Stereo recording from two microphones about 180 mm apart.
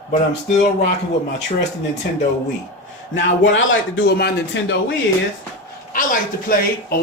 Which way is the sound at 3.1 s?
90° left.